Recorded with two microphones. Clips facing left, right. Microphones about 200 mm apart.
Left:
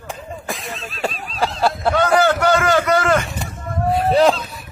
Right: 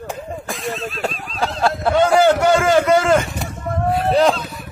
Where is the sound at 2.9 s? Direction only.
15° right (ahead or behind).